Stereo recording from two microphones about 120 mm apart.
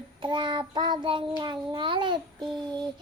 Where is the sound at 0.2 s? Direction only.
40° right (ahead or behind).